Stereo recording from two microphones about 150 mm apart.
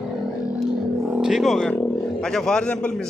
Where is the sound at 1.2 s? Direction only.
Centre (ahead or behind).